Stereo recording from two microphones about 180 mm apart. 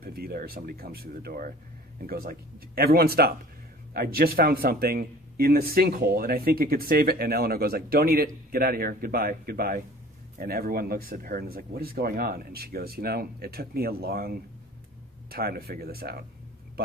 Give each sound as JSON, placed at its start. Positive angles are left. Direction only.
{"t": 0.0, "sound": "speech", "side_deg": -60}